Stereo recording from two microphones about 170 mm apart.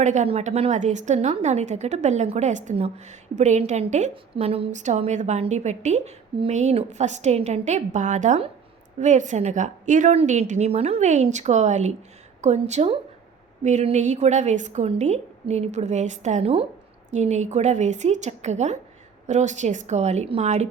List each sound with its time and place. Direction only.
0.0 s a woman's voice: 45° right (ahead or behind)